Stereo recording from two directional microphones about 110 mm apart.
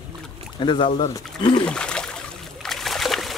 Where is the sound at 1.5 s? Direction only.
10° left (ahead or behind).